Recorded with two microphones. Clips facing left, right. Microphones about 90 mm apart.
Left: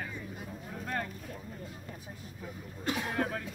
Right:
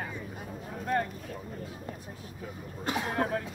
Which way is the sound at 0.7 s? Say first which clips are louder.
Right 7 dB; 25° right (ahead or behind).